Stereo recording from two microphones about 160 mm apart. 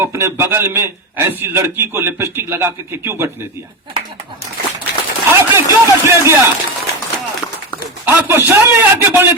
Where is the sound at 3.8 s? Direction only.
30° right (ahead or behind).